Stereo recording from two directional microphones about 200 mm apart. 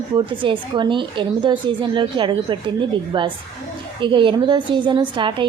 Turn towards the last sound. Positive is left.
turn(degrees=-25)  # may be behind; listen again after turning